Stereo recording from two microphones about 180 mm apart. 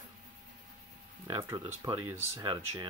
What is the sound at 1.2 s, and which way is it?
Speech, 25° right (ahead or behind).